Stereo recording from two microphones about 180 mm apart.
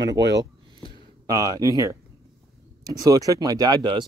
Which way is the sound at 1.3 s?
20° right (ahead or behind).